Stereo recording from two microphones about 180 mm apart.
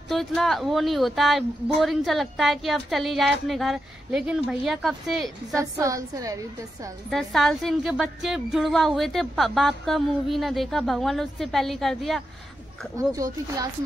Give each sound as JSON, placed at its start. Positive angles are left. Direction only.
{"t": 0.1, "sound": "speech", "side_deg": 0}
{"t": 5.5, "sound": "a woman's voice", "side_deg": -20}
{"t": 7.1, "sound": "speech", "side_deg": 0}
{"t": 12.9, "sound": "a woman's voice", "side_deg": -20}